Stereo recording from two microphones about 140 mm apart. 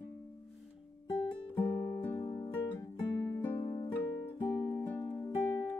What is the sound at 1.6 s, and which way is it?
Music, 15° left (ahead or behind).